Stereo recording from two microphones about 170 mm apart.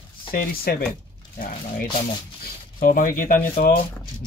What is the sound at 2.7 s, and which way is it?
Speech, 55° left (ahead or behind).